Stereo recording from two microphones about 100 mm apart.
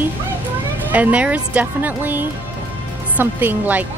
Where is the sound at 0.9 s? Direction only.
15° right (ahead or behind).